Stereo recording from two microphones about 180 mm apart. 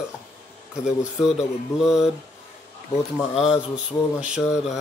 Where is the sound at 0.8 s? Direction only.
35° left (ahead or behind).